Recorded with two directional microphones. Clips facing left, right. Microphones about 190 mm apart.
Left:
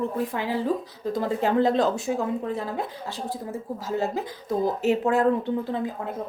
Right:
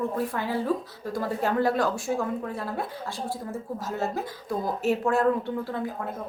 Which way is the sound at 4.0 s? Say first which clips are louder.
Left 2 dB; 15° left (ahead or behind).